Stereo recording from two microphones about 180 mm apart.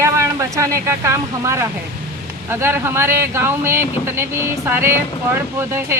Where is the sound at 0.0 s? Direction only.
15° right (ahead or behind).